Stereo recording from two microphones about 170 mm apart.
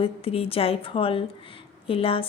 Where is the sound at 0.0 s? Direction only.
35° left (ahead or behind).